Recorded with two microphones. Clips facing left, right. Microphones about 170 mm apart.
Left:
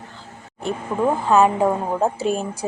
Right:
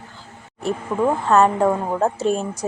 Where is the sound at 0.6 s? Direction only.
5° left (ahead or behind).